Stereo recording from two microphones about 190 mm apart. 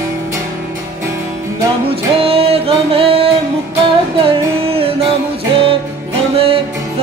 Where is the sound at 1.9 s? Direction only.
30° right (ahead or behind).